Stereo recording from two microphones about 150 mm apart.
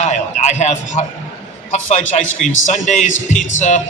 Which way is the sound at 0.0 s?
50° left (ahead or behind).